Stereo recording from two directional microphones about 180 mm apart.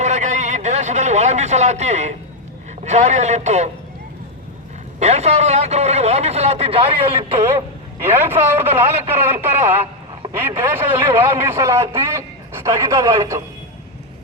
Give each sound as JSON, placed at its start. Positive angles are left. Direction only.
{"t": 0.0, "sound": "a sound", "side_deg": -40}
{"t": 2.8, "sound": "a man's voice", "side_deg": -40}
{"t": 4.9, "sound": "a man's voice", "side_deg": -35}
{"t": 8.0, "sound": "a man's voice", "side_deg": -10}